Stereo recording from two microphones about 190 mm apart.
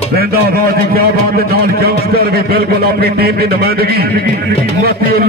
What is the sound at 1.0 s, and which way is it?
A man's voice, 55° right (ahead or behind).